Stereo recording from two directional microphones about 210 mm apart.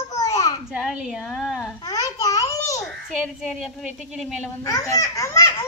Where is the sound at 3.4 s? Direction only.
Centre (ahead or behind).